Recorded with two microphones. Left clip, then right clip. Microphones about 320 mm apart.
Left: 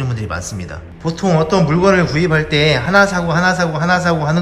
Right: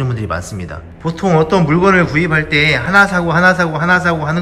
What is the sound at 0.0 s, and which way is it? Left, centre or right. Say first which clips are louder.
A man's voice: right 3 dB; centre.